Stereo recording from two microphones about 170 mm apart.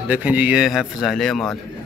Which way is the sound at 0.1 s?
10° right (ahead or behind).